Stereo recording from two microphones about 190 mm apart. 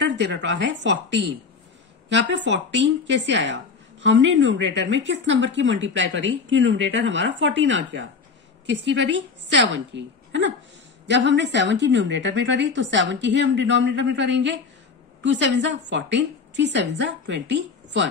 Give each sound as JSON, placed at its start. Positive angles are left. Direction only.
{"t": 0.0, "sound": "speech", "side_deg": -70}